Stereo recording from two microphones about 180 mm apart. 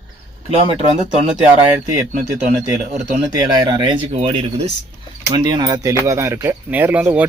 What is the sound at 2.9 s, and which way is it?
Speech, 45° right (ahead or behind).